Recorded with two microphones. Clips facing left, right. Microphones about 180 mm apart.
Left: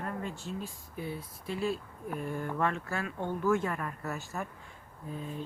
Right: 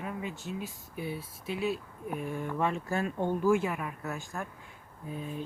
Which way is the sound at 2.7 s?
15° right (ahead or behind).